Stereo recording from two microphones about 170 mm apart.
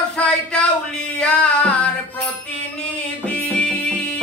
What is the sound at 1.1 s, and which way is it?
Music, 5° left (ahead or behind).